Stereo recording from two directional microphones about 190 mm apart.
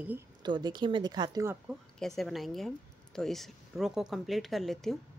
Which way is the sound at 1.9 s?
Centre (ahead or behind).